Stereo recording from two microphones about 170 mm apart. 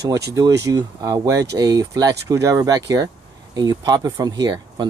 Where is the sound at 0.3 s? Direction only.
20° right (ahead or behind).